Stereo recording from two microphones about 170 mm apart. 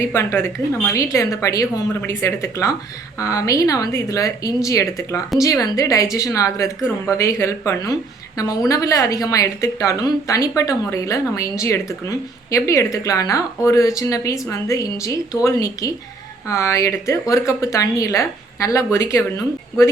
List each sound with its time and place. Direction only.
0.1 s a woman's voice: 15° left (ahead or behind)